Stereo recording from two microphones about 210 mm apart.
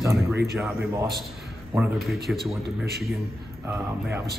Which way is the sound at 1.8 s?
Centre (ahead or behind).